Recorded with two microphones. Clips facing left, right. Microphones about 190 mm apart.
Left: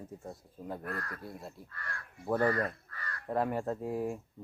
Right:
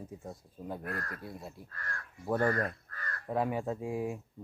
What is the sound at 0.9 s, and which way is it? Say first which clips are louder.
Speech: even; 45° right (ahead or behind).